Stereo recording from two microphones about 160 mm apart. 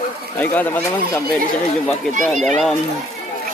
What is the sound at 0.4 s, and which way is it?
Speech, 10° left (ahead or behind).